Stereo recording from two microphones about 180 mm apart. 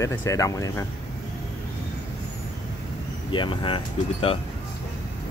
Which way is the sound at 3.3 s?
30° left (ahead or behind).